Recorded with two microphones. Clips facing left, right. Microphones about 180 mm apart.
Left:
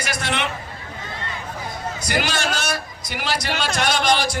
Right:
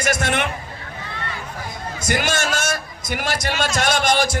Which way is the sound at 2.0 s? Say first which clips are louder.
Right 2 dB; 50° right (ahead or behind).